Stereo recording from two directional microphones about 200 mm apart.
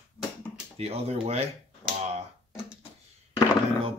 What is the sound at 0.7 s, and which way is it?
Finger snapping, 30° right (ahead or behind).